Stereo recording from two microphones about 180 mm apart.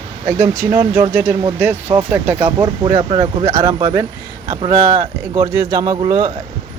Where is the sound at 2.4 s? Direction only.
25° right (ahead or behind).